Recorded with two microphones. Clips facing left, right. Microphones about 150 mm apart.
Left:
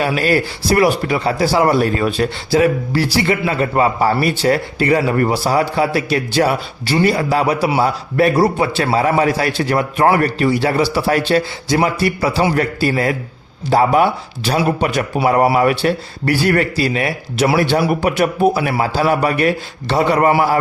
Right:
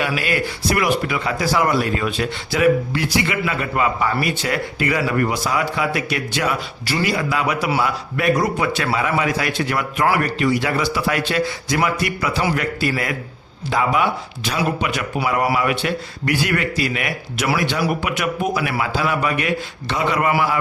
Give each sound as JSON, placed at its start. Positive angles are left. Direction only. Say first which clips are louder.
{"t": 0.0, "sound": "speech", "louder": "left 5 dB", "side_deg": 35}